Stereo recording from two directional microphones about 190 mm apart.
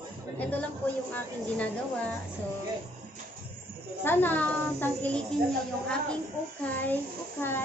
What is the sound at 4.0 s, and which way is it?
A woman's voice, 10° left (ahead or behind).